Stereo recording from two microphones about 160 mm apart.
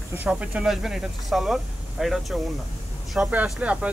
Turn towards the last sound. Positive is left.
turn(degrees=-10)  # may be behind; listen again after turning